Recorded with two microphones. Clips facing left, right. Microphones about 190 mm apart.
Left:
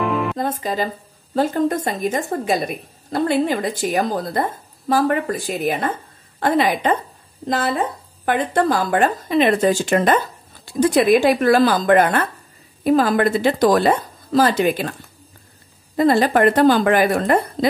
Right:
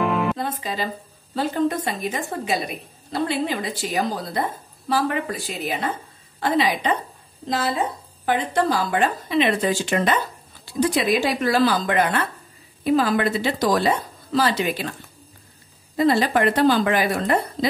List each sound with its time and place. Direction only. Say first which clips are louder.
0.0 s music: left 1 dB; centre (ahead or behind)
0.4 s a woman's voice: left 5 dB; 45° left (ahead or behind)
16.0 s a woman's voice: left 4 dB; 50° left (ahead or behind)